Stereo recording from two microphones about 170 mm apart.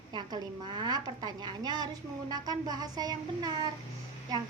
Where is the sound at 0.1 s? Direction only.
25° right (ahead or behind).